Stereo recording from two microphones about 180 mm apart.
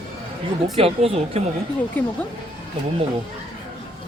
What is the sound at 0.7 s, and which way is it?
Speech, 35° right (ahead or behind).